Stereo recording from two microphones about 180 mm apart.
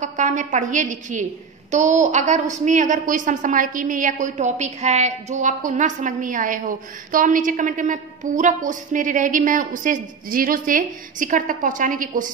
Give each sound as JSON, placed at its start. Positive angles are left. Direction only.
{"t": 0.0, "sound": "a woman's voice", "side_deg": -45}